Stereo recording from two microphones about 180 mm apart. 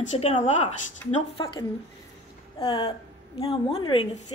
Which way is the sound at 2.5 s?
30° left (ahead or behind).